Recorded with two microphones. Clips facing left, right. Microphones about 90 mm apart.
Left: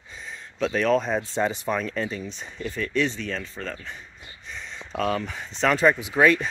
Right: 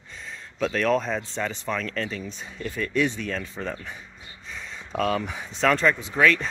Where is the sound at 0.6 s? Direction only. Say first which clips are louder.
Left 1 dB; centre (ahead or behind).